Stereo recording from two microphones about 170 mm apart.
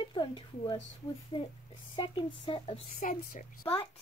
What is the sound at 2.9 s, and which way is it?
Speech, 50° left (ahead or behind).